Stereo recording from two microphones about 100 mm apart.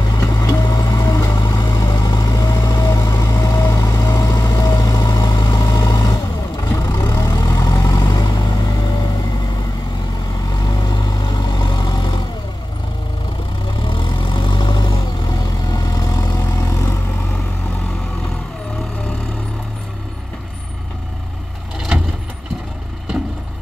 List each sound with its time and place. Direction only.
0.1 s vehicle: 40° left (ahead or behind)
10.5 s vehicle: 40° left (ahead or behind)
13.7 s vehicle: 60° left (ahead or behind); by 16.9 s 30° left (ahead or behind)
21.7 s vehicle: 5° right (ahead or behind)